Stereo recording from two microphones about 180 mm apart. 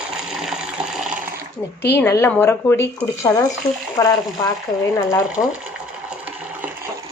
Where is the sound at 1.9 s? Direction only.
15° left (ahead or behind).